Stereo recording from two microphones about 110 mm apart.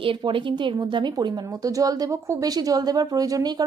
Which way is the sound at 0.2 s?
50° right (ahead or behind).